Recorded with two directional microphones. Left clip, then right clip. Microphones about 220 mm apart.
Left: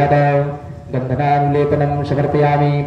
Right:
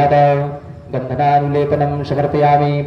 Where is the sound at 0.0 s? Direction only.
40° right (ahead or behind).